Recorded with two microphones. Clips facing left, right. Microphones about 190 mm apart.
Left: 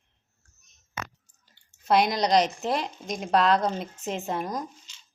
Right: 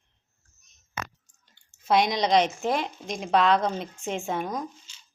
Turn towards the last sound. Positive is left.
turn(degrees=0)  # may be behind; listen again after turning